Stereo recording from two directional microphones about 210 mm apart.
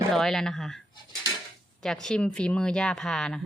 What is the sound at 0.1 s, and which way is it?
Speech, centre (ahead or behind).